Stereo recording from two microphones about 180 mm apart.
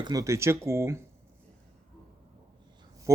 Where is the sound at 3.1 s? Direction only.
15° right (ahead or behind).